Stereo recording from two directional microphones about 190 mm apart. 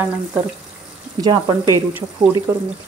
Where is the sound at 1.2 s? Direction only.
20° right (ahead or behind).